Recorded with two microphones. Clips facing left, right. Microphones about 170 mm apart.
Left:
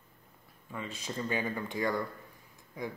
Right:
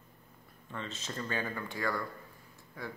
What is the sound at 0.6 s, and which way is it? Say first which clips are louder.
Speech: left 2 dB; 10° left (ahead or behind).